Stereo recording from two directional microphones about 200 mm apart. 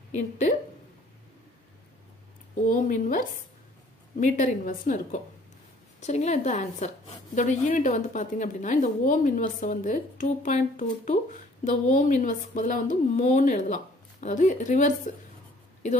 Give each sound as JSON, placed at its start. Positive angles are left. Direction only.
{"t": 0.1, "sound": "a woman's voice", "side_deg": 35}
{"t": 2.6, "sound": "a woman's voice", "side_deg": 40}